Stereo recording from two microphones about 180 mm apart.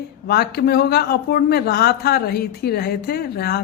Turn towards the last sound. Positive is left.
turn(degrees=60)  # may be behind; listen again after turning